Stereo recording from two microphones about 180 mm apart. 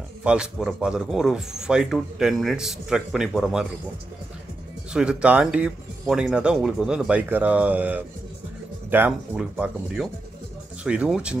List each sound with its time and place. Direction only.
0.2 s a man's voice: 5° right (ahead or behind)
4.9 s a man's voice: 5° right (ahead or behind)